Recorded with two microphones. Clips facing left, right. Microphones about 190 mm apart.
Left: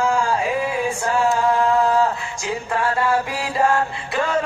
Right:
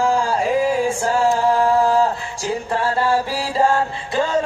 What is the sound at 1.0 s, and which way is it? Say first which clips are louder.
Male singing: left 1 dB; 40° right (ahead or behind).